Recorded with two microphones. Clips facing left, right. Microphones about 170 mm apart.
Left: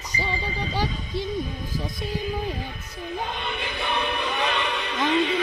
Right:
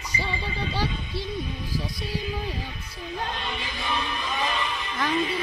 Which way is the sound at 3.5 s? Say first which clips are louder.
Left 5 dB; 65° left (ahead or behind).